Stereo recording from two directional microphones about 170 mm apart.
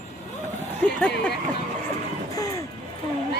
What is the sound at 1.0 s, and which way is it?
Speech, 5° left (ahead or behind).